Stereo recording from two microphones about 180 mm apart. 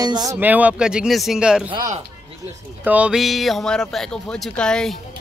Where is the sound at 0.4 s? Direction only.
10° right (ahead or behind).